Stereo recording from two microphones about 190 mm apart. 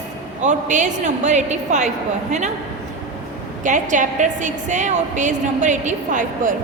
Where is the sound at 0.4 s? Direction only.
40° right (ahead or behind).